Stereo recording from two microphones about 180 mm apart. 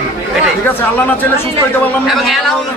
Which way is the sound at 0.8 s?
10° left (ahead or behind).